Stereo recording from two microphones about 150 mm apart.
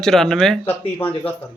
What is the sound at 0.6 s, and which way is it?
Speech, 15° left (ahead or behind).